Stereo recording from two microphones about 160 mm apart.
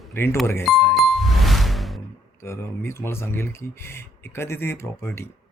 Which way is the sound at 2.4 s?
15° left (ahead or behind).